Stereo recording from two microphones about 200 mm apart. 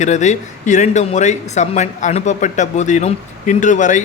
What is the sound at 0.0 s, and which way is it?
Speech, 35° left (ahead or behind).